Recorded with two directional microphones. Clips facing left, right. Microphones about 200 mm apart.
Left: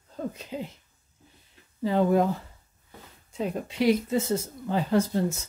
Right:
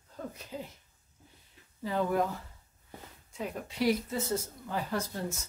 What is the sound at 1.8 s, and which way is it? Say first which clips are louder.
Speech: left 7 dB; 30° left (ahead or behind).